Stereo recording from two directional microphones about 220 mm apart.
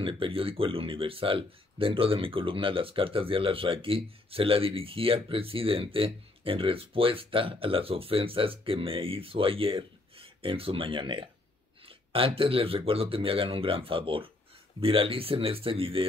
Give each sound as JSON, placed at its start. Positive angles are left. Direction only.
{"t": 0.0, "sound": "speech", "side_deg": -25}